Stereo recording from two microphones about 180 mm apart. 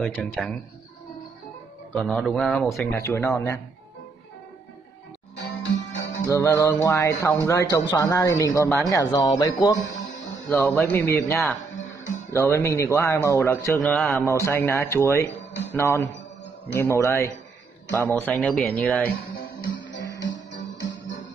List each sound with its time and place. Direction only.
0.0 s speech: centre (ahead or behind)
2.0 s speech: centre (ahead or behind)
2.9 s a man's voice: 15° left (ahead or behind)
5.3 s music: 80° left
6.2 s a man's voice: 15° left (ahead or behind)
20.2 s music: 80° left